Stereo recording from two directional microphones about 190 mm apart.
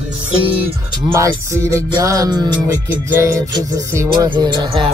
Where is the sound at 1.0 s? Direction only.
15° right (ahead or behind).